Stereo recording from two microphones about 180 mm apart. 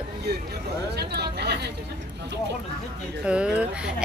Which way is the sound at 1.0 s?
65° right (ahead or behind).